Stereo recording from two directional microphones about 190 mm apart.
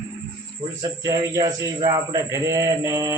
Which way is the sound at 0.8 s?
20° right (ahead or behind).